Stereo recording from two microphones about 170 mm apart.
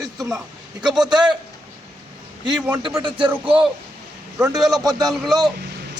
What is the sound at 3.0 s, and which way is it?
Speech, 30° right (ahead or behind).